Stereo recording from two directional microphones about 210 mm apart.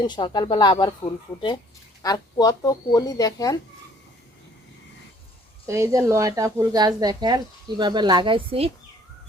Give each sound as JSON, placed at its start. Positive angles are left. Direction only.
{"t": 0.0, "sound": "speech", "side_deg": 20}
{"t": 2.0, "sound": "speech", "side_deg": 15}
{"t": 5.6, "sound": "a woman's voice", "side_deg": -15}